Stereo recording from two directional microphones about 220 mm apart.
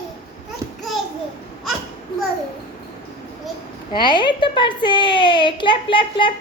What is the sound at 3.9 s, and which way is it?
A child's voice, 20° left (ahead or behind).